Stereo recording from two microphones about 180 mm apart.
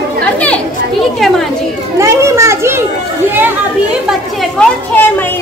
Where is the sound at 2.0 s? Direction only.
15° right (ahead or behind).